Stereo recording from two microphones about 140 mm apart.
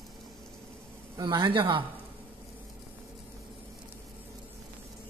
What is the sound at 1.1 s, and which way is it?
Speech, 30° right (ahead or behind).